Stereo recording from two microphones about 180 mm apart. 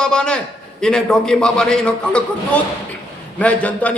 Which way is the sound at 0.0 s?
5° left (ahead or behind).